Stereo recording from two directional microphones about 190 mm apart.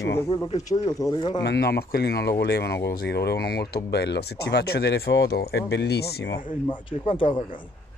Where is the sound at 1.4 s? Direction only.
60° left (ahead or behind).